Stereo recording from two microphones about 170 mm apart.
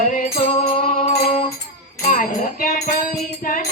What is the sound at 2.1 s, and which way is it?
Speech, 55° left (ahead or behind).